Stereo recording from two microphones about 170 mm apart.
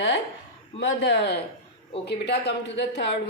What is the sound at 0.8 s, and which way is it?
A woman's voice, 80° left.